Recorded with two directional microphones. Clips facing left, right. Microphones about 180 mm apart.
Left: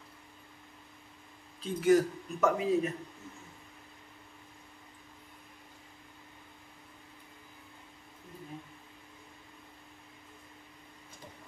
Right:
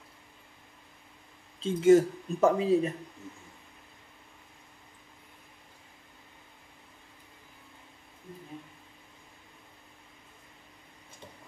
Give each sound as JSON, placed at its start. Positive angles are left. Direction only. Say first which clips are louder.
{"t": 1.6, "sound": "speech", "louder": "right 5 dB", "side_deg": -25}